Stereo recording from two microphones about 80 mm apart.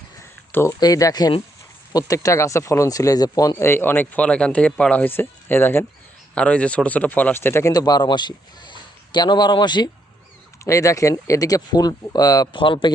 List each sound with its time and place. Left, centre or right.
0.5 s speech: left
0.8 s speech: left
3.5 s speech: left
6.3 s speech: centre; by 7.7 s left
7.7 s a man's voice: left
10.6 s speech: left
12.5 s speech: left